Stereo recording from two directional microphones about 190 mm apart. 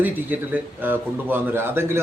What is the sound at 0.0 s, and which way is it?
Speech, 10° right (ahead or behind).